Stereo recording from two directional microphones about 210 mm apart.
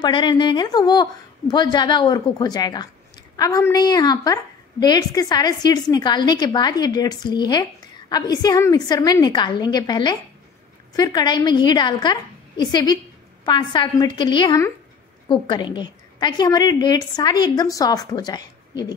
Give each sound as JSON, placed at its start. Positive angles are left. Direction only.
{"t": 0.0, "sound": "a woman's voice", "side_deg": 20}